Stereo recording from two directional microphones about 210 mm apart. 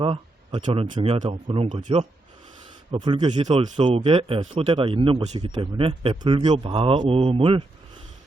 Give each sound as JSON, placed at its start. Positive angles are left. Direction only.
{"t": 0.0, "sound": "speech", "side_deg": -25}